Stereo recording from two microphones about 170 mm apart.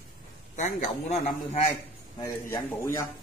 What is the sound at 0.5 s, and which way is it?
Speech, 45° left (ahead or behind).